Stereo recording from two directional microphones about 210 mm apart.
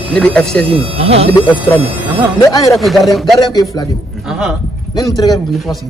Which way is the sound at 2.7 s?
Centre (ahead or behind).